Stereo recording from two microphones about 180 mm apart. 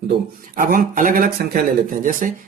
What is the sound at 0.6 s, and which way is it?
Speech, 50° right (ahead or behind).